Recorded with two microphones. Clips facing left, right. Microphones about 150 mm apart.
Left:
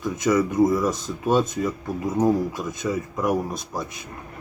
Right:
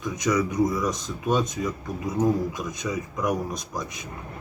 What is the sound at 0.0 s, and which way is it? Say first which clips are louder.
Speech: left 3 dB; 5° left (ahead or behind).